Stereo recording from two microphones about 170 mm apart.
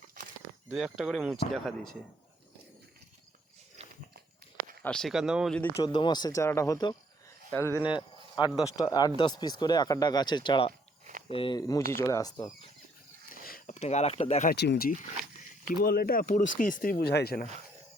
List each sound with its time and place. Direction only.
0.7 s speech: 5° right (ahead or behind)
3.8 s walk: 40° right (ahead or behind)
4.8 s speech: 5° left (ahead or behind)
5.5 s speech: 10° left (ahead or behind)
5.8 s speech: 25° left (ahead or behind)
7.9 s speech: 25° left (ahead or behind)
10.7 s a sound: 50° right (ahead or behind)
11.3 s speech: 30° left (ahead or behind)
13.3 s a sound: 55° left (ahead or behind)
13.7 s speech: 40° left (ahead or behind)
14.5 s speech: 80° left; by 17.5 s 60° left (ahead or behind)